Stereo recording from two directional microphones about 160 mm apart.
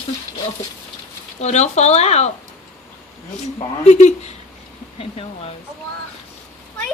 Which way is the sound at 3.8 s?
45° left (ahead or behind).